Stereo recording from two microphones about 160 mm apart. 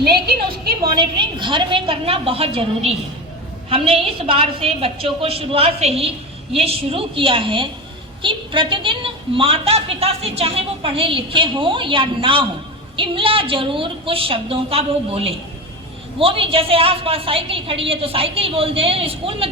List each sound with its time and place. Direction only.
0.0 s a woman's voice: 80° right
0.9 s a woman's voice: 30° right (ahead or behind)